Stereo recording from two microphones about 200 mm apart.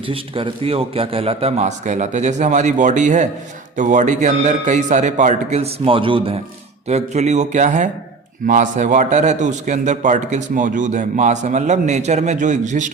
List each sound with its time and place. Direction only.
0.1 s a man's voice: 25° right (ahead or behind)